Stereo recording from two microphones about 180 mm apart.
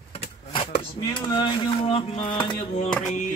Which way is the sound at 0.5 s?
30° left (ahead or behind).